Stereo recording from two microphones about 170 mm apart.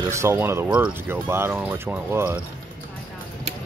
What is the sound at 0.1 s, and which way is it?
Speech, 15° right (ahead or behind).